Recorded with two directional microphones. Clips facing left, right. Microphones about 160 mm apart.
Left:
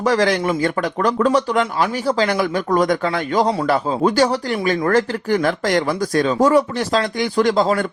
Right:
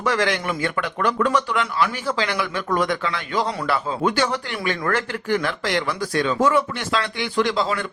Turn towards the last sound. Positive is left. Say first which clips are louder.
# left 5 dB
turn(degrees=45)  # may be behind; listen again after turning